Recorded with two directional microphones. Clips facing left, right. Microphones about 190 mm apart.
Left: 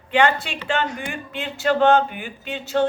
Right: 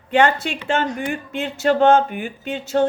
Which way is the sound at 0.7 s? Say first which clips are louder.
Right 3 dB; 45° right (ahead or behind).